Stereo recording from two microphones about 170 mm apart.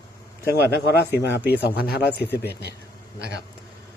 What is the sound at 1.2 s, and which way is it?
Speech, 90° left.